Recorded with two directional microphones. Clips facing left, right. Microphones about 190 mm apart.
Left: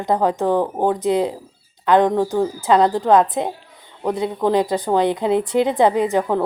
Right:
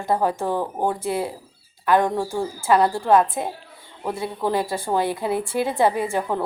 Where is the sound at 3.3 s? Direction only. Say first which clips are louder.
Left 5 dB; 20° left (ahead or behind).